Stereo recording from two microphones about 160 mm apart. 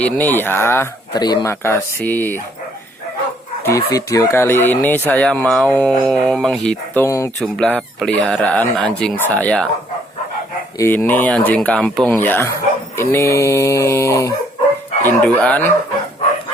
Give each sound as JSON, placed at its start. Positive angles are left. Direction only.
{"t": 0.0, "sound": "speech", "side_deg": 10}
{"t": 1.1, "sound": "speech", "side_deg": 25}
{"t": 3.6, "sound": "speech", "side_deg": 20}
{"t": 7.3, "sound": "speech", "side_deg": 0}
{"t": 10.8, "sound": "speech", "side_deg": 15}